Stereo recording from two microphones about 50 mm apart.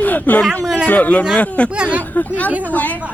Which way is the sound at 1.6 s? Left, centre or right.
Right.